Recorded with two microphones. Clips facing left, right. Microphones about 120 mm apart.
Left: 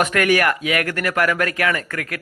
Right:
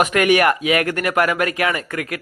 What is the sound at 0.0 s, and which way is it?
Speech, 20° right (ahead or behind).